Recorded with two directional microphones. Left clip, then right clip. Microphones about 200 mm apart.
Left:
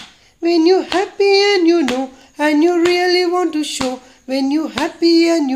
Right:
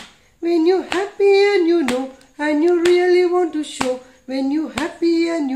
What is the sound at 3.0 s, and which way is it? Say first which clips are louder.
Speech: left 1 dB; 35° left (ahead or behind).